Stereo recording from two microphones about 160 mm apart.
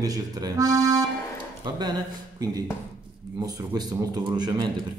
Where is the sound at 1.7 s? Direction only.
25° right (ahead or behind).